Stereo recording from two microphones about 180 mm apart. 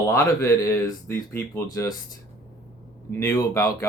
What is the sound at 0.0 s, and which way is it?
Speech, 15° left (ahead or behind).